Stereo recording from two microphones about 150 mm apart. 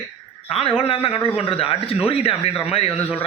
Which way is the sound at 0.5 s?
40° left (ahead or behind).